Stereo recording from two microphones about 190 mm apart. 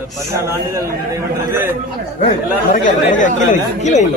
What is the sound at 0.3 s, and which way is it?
A man's voice, 15° right (ahead or behind).